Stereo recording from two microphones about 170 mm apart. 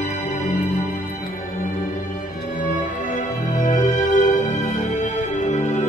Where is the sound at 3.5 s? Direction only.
50° left (ahead or behind).